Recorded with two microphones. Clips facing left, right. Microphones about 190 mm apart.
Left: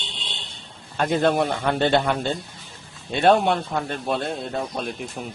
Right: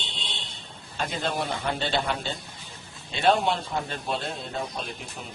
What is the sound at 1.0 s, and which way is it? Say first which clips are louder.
Speech: left 9 dB; 60° left (ahead or behind).